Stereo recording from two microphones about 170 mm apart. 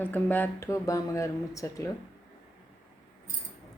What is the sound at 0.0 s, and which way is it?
Speech, 10° left (ahead or behind).